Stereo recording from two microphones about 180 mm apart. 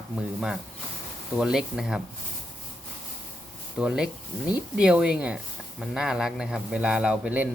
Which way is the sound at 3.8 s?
5° right (ahead or behind).